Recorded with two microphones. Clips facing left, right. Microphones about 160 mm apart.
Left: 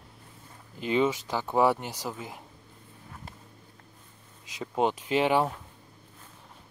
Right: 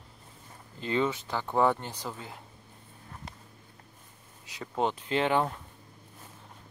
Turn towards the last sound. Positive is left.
turn(degrees=10)  # may be behind; listen again after turning